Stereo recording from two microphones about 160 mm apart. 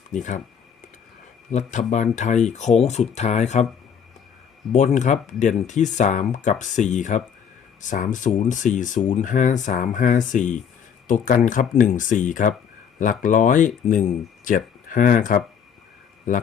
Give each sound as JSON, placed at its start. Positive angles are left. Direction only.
{"t": 0.1, "sound": "speech", "side_deg": 50}
{"t": 1.5, "sound": "speech", "side_deg": 50}
{"t": 4.7, "sound": "speech", "side_deg": 50}